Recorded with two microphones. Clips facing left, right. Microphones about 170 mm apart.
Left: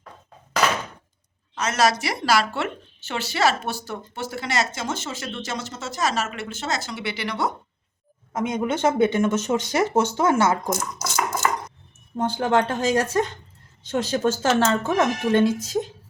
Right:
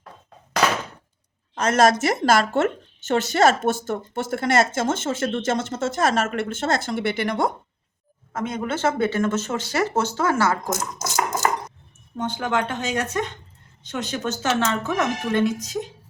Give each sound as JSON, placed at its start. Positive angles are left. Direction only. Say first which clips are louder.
{"t": 1.5, "sound": "speech", "louder": "right 4 dB", "side_deg": -50}
{"t": 8.3, "sound": "speech", "louder": "left 2 dB", "side_deg": 15}
{"t": 10.7, "sound": "speech", "louder": "left 1 dB", "side_deg": -45}
{"t": 12.1, "sound": "speech", "louder": "left 4 dB", "side_deg": 30}